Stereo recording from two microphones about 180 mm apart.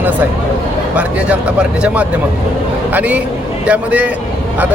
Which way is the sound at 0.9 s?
5° right (ahead or behind).